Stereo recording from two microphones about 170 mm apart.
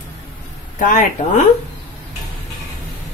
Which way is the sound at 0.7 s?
50° left (ahead or behind).